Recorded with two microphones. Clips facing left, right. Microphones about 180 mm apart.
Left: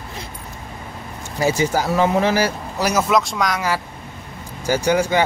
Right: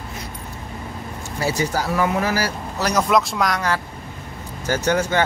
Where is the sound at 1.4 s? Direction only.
15° left (ahead or behind).